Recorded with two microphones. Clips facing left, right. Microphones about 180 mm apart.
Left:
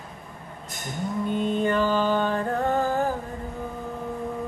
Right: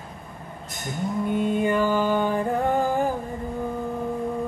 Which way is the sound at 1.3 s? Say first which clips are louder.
Right 1 dB; 10° right (ahead or behind).